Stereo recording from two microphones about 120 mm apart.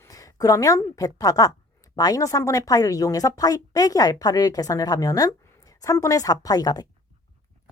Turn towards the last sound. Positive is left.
turn(degrees=35)  # may be behind; listen again after turning